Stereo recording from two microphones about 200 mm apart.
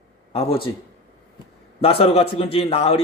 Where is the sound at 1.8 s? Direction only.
30° left (ahead or behind).